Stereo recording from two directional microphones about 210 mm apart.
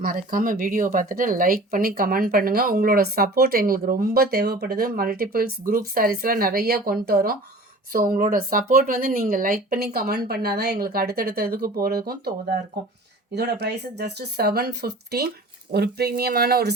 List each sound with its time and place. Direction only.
0.0 s speech: 40° right (ahead or behind)